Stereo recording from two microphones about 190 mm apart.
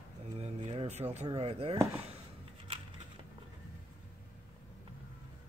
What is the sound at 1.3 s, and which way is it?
Speech, 30° right (ahead or behind).